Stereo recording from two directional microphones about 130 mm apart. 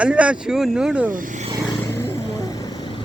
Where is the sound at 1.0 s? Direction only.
90° right.